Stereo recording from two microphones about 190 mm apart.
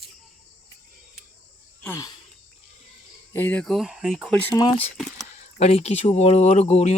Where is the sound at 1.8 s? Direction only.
15° left (ahead or behind).